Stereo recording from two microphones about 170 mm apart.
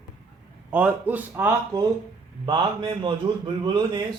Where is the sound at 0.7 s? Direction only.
10° right (ahead or behind).